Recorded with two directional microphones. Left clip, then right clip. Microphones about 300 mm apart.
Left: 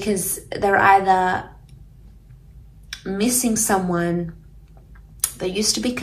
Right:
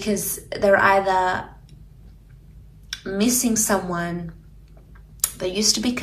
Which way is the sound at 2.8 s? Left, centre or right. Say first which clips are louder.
Even; centre.